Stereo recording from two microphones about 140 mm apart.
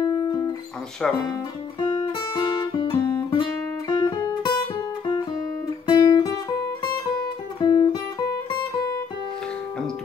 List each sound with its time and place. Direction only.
0.0 s music: 25° left (ahead or behind)
1.0 s speech: 5° left (ahead or behind)
1.9 s guitar: 30° left (ahead or behind)
3.9 s music: 30° left (ahead or behind)